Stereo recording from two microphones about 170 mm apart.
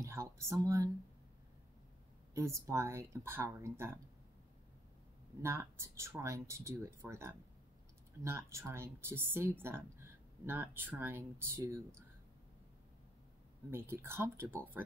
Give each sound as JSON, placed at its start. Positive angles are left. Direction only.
{"t": 0.0, "sound": "speech", "side_deg": -15}
{"t": 2.3, "sound": "speech", "side_deg": -15}
{"t": 5.4, "sound": "speech", "side_deg": -15}
{"t": 13.7, "sound": "speech", "side_deg": -15}